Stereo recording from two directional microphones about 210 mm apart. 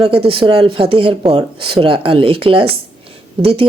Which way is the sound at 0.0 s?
25° right (ahead or behind).